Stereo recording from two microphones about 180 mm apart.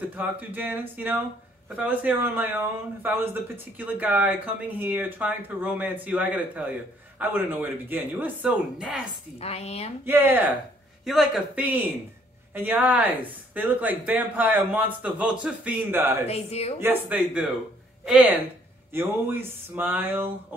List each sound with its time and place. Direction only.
0.1 s speech: 10° right (ahead or behind)
9.4 s speech: 35° left (ahead or behind)
10.0 s speech: 10° right (ahead or behind)
16.3 s speech: 35° left (ahead or behind)
16.8 s speech: 10° right (ahead or behind)